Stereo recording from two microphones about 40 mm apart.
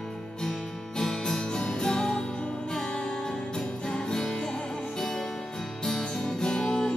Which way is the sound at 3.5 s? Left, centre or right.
Centre.